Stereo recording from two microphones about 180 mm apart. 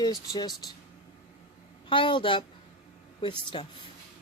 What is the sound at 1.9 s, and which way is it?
A woman's voice, 30° left (ahead or behind).